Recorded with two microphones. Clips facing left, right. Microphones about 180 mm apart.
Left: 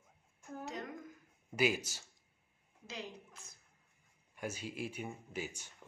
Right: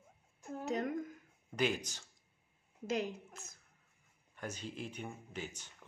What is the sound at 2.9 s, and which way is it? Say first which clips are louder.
Speech: right 10 dB; 45° right (ahead or behind).